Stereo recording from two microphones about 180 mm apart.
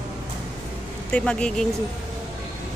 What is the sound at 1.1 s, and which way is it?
Speech, 5° left (ahead or behind).